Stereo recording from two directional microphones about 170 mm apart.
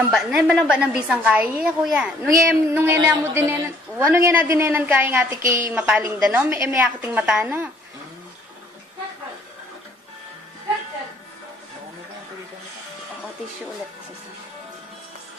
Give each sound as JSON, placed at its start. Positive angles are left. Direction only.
{"t": 0.1, "sound": "a woman's voice", "side_deg": -5}